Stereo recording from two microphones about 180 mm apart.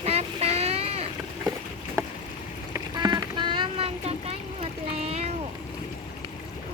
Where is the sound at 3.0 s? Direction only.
25° right (ahead or behind).